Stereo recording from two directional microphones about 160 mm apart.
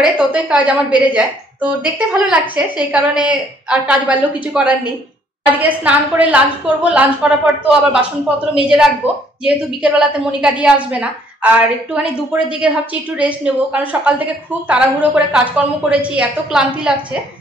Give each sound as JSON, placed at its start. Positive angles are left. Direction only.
{"t": 0.0, "sound": "a woman's voice", "side_deg": -5}